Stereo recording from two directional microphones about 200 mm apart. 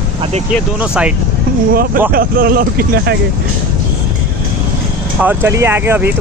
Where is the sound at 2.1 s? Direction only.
50° right (ahead or behind).